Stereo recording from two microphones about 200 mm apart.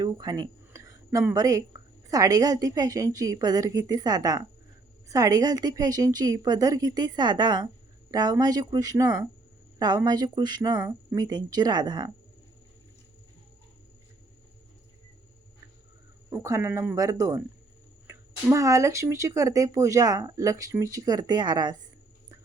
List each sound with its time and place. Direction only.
0.0 s a woman's voice: 20° right (ahead or behind)
16.3 s speech: 15° right (ahead or behind)